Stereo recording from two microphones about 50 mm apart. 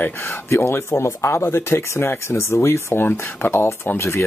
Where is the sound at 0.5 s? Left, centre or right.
Left.